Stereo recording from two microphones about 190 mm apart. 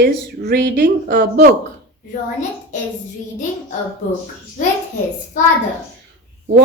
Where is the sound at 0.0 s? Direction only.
55° right (ahead or behind).